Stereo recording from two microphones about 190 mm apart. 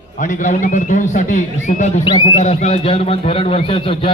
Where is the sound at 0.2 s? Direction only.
40° left (ahead or behind).